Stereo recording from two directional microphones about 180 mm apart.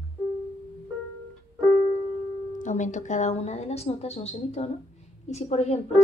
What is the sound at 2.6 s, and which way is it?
Speech, 45° left (ahead or behind).